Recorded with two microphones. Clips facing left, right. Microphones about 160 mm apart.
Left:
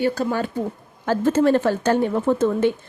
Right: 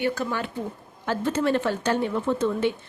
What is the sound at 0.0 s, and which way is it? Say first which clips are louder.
Speech: left 5 dB; 35° left (ahead or behind).